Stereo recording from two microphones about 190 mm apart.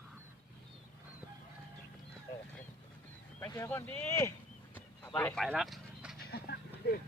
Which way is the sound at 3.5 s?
15° left (ahead or behind).